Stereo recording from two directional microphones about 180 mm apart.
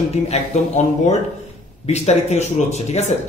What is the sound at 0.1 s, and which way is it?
Speech, 40° left (ahead or behind).